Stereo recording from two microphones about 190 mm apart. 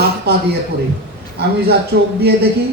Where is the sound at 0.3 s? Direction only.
60° right (ahead or behind).